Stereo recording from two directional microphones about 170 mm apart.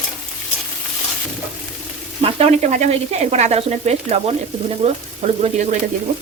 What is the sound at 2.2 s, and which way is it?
Speech, 40° right (ahead or behind).